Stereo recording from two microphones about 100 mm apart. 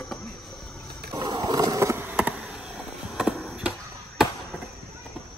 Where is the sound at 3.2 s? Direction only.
5° right (ahead or behind).